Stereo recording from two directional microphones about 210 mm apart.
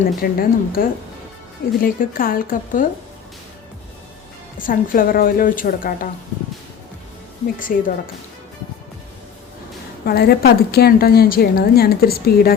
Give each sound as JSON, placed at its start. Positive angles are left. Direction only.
{"t": 0.2, "sound": "a woman's voice", "side_deg": 45}
{"t": 4.5, "sound": "a woman's voice", "side_deg": 40}
{"t": 7.6, "sound": "a woman's voice", "side_deg": 40}
{"t": 10.1, "sound": "a woman's voice", "side_deg": 50}